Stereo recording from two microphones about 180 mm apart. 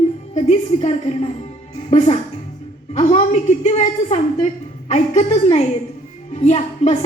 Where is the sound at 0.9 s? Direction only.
35° left (ahead or behind).